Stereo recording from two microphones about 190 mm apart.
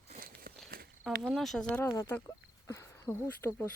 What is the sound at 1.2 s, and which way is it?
Speech, centre (ahead or behind).